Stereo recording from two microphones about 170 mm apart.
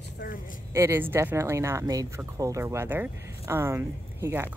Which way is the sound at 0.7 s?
15° right (ahead or behind).